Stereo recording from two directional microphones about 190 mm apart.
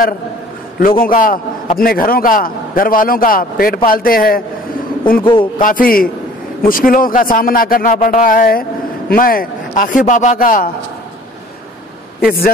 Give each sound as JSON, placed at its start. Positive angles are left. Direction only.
{"t": 1.0, "sound": "a man's voice", "side_deg": 45}
{"t": 5.2, "sound": "speech", "side_deg": 25}
{"t": 5.6, "sound": "a man's voice", "side_deg": 45}
{"t": 12.2, "sound": "speech", "side_deg": 50}